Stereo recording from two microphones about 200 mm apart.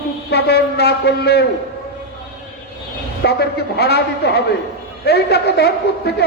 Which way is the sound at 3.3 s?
55° left (ahead or behind).